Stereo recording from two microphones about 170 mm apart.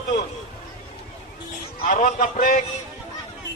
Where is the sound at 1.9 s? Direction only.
55° left (ahead or behind).